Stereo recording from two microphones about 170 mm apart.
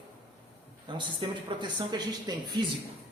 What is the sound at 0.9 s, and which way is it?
Speech, 30° right (ahead or behind).